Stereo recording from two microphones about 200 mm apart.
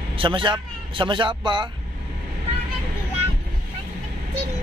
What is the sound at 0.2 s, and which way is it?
Speech, 25° right (ahead or behind).